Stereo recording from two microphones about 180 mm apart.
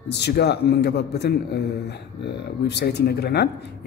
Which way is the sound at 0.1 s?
65° left (ahead or behind).